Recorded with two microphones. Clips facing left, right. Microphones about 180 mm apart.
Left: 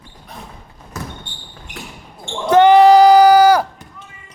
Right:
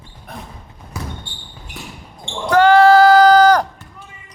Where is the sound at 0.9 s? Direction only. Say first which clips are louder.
Even; 10° right (ahead or behind).